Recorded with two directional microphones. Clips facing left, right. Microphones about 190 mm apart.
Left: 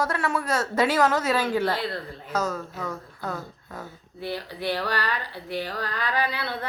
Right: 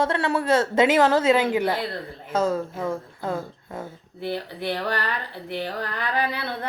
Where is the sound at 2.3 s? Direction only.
30° right (ahead or behind).